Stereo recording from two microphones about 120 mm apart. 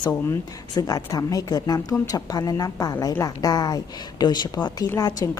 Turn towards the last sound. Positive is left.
turn(degrees=30)  # may be behind; listen again after turning